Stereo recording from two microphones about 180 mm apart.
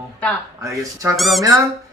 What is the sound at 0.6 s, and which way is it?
Speech, 20° right (ahead or behind).